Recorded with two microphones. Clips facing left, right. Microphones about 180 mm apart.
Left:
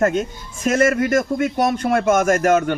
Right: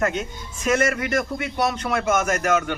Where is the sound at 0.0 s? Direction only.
45° left (ahead or behind).